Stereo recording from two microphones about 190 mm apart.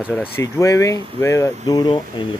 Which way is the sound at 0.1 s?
15° left (ahead or behind).